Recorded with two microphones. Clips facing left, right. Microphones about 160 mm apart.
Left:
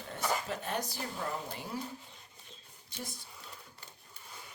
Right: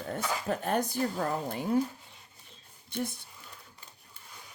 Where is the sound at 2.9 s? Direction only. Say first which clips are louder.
Right 11 dB; 55° right (ahead or behind).